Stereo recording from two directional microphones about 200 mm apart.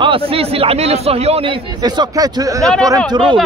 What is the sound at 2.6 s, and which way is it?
Speech, 5° left (ahead or behind).